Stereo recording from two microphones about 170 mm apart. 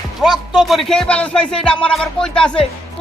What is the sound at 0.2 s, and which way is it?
Speech, centre (ahead or behind).